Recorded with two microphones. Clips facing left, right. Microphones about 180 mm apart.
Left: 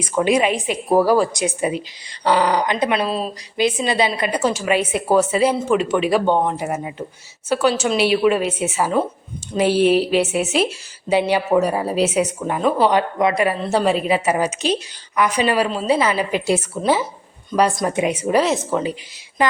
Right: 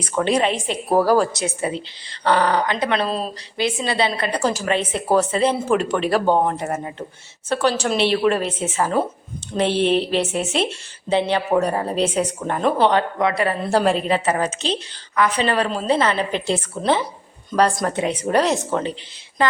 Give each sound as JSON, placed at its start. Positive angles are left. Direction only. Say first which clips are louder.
{"t": 0.0, "sound": "a woman's voice", "louder": "left 2 dB", "side_deg": 10}
{"t": 1.3, "sound": "a woman's voice", "louder": "left 3 dB", "side_deg": 15}
{"t": 3.6, "sound": "a woman's voice", "louder": "left 3 dB", "side_deg": 15}
{"t": 4.4, "sound": "a woman's voice", "louder": "left 2 dB", "side_deg": 0}
{"t": 12.9, "sound": "a woman's voice", "louder": "left 2 dB", "side_deg": 15}
{"t": 13.6, "sound": "a woman's voice", "louder": "even", "side_deg": 0}